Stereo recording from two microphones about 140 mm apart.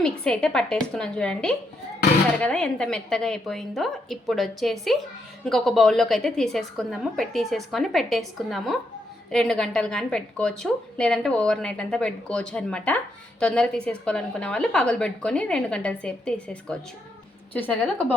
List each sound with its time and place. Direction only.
0.0 s a woman's voice: 5° left (ahead or behind)